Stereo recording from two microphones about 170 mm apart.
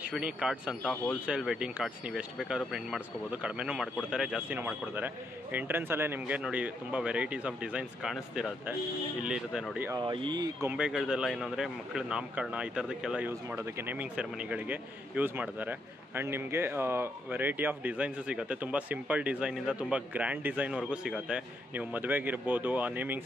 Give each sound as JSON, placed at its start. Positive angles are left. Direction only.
{"t": 0.0, "sound": "speech", "side_deg": -5}
{"t": 9.8, "sound": "speech", "side_deg": -25}
{"t": 10.7, "sound": "speech", "side_deg": -5}
{"t": 13.3, "sound": "speech", "side_deg": -15}